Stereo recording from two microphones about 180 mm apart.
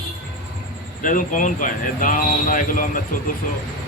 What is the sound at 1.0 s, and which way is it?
Speech, 45° left (ahead or behind).